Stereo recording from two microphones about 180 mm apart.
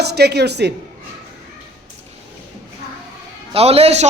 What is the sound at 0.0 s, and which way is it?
Speech, 65° right (ahead or behind).